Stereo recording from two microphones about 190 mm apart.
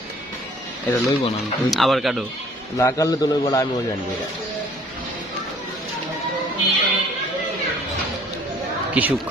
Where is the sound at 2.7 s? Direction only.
15° left (ahead or behind).